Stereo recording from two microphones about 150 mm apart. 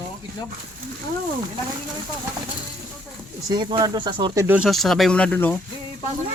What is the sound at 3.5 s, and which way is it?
Speech, 30° right (ahead or behind).